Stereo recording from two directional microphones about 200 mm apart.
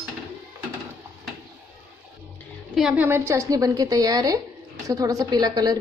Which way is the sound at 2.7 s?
5° right (ahead or behind).